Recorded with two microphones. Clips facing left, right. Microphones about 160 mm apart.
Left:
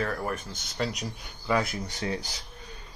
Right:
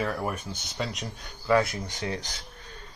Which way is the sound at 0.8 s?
5° left (ahead or behind).